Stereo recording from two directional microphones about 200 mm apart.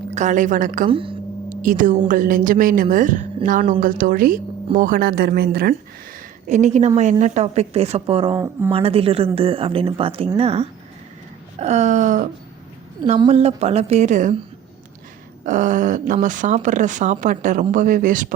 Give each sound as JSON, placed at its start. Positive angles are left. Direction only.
{"t": 0.1, "sound": "speech", "side_deg": -35}
{"t": 0.9, "sound": "a woman's voice", "side_deg": -25}
{"t": 1.5, "sound": "a woman's voice", "side_deg": -40}
{"t": 6.5, "sound": "a woman's voice", "side_deg": -35}
{"t": 15.4, "sound": "speech", "side_deg": -40}